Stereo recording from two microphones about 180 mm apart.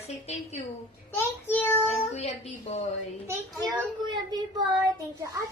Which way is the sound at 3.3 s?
15° right (ahead or behind).